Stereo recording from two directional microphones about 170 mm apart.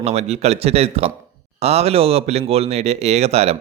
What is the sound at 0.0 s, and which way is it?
Speech, 40° right (ahead or behind).